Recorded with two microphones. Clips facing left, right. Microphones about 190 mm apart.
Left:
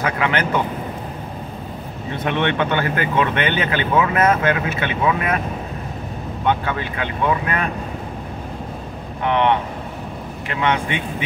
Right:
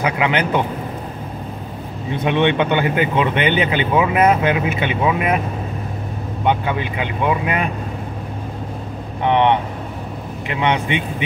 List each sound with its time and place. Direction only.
0.0 s speech: 15° right (ahead or behind)
2.2 s speech: 15° right (ahead or behind)
6.4 s speech: 15° right (ahead or behind)
9.2 s speech: 20° right (ahead or behind)